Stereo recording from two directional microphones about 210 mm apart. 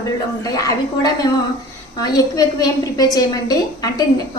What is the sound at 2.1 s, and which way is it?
A woman's voice, 20° left (ahead or behind).